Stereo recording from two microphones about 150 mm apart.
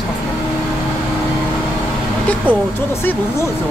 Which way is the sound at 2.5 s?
10° left (ahead or behind).